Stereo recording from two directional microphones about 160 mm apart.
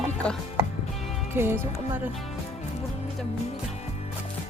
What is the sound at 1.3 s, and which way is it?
Speech, 15° right (ahead or behind).